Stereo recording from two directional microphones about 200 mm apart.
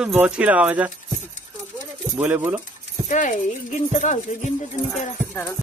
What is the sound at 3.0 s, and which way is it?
Speech, 40° left (ahead or behind).